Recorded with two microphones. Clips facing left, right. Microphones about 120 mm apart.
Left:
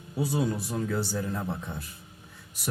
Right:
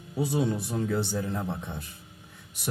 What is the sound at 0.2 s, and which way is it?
Speech, 20° right (ahead or behind).